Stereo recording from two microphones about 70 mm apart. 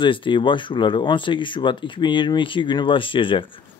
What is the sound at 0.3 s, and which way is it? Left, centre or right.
Speech, left.